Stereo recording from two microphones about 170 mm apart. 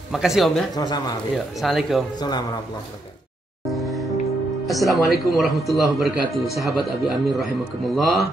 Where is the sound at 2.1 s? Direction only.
25° left (ahead or behind).